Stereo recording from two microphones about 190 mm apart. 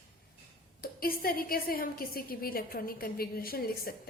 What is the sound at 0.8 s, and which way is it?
A woman's voice, 50° left (ahead or behind).